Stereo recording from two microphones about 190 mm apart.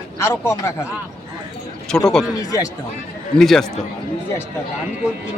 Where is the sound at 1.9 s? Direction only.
5° left (ahead or behind).